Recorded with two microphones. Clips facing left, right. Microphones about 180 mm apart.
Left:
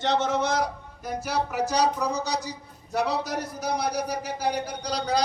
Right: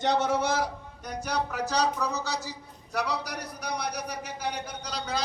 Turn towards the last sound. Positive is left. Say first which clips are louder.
# left 6 dB
turn(degrees=35)  # may be behind; listen again after turning